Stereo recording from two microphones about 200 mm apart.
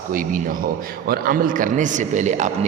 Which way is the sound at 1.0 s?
45° right (ahead or behind).